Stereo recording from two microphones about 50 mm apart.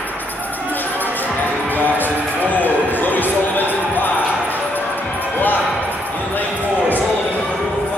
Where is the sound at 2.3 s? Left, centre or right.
Left.